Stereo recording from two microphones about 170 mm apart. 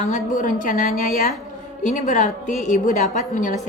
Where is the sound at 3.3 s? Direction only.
45° left (ahead or behind).